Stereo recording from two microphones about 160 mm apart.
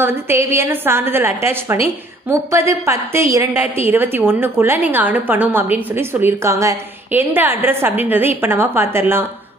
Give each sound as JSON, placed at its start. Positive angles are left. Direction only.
{"t": 0.0, "sound": "a woman's voice", "side_deg": -15}